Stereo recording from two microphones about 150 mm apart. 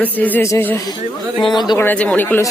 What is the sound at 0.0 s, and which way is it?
Speech, 10° left (ahead or behind).